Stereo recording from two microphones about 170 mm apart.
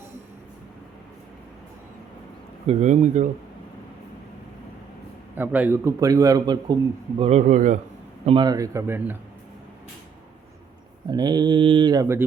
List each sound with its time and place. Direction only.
2.6 s speech: 45° right (ahead or behind)
5.4 s a man's voice: 10° right (ahead or behind)
7.2 s speech: 40° right (ahead or behind)
8.2 s a man's voice: 30° right (ahead or behind); by 9.1 s 15° right (ahead or behind)
11.1 s a man's voice: 25° right (ahead or behind)